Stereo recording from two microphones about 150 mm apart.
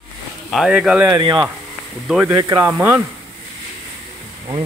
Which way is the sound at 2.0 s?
10° right (ahead or behind).